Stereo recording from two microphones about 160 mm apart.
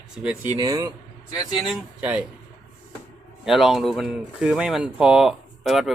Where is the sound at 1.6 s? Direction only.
5° right (ahead or behind).